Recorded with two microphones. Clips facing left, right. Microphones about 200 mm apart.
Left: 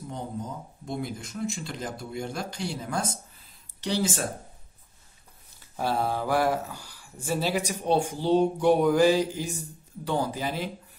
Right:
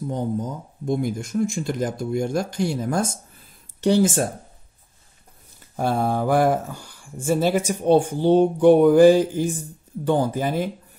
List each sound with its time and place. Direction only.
0.8 s speech: 50° right (ahead or behind)
5.8 s speech: 50° right (ahead or behind)